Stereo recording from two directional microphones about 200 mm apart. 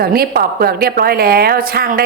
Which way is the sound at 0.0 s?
50° right (ahead or behind).